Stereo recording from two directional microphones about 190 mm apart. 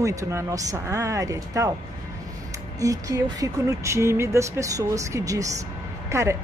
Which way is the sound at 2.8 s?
20° right (ahead or behind).